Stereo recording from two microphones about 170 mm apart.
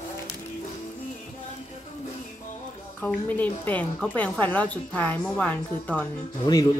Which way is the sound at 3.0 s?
5° left (ahead or behind).